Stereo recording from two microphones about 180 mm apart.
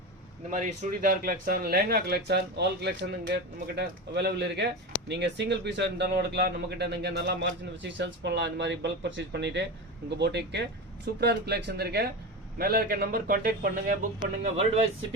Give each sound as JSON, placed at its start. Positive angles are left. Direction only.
{"t": 0.5, "sound": "speech", "side_deg": -45}
{"t": 7.8, "sound": "a man's voice", "side_deg": -85}
{"t": 14.4, "sound": "speech", "side_deg": -35}